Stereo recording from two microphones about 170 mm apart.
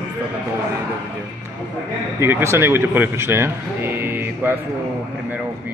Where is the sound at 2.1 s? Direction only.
15° right (ahead or behind).